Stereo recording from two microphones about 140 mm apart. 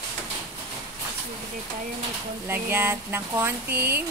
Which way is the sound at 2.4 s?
15° right (ahead or behind).